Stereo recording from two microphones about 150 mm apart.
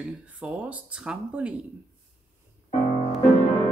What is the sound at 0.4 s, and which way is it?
Speech, 10° right (ahead or behind).